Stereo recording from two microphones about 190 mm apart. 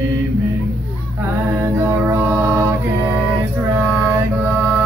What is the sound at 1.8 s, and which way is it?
Mantra, 15° right (ahead or behind).